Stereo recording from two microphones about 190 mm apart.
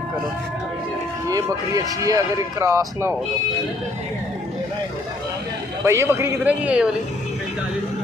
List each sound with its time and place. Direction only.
1.3 s speech: 20° right (ahead or behind)
5.9 s speech: 15° right (ahead or behind)